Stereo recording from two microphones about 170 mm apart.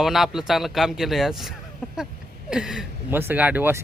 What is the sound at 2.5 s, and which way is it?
Speech, 5° right (ahead or behind).